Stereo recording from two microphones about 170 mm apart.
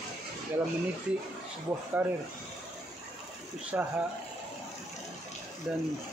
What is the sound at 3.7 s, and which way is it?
Speech, 10° right (ahead or behind).